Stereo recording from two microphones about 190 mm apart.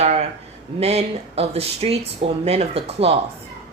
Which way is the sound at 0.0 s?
35° right (ahead or behind).